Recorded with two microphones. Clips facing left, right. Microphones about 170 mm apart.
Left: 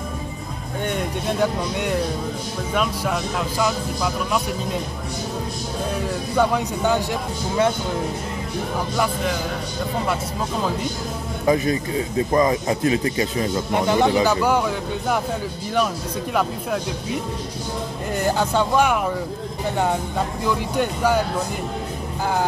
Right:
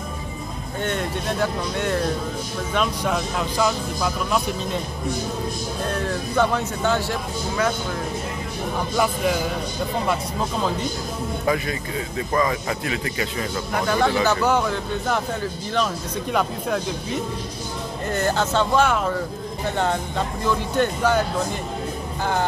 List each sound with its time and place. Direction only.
0.8 s speech: 10° left (ahead or behind)
5.9 s speech: 10° left (ahead or behind)
11.4 s speech: 30° left (ahead or behind); by 15.1 s 10° left (ahead or behind)
18.1 s speech: 10° left (ahead or behind)